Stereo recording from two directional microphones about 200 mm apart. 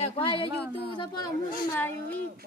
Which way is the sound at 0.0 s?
25° left (ahead or behind).